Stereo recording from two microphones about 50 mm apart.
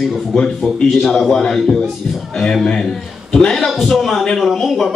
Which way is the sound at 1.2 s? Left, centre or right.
Centre.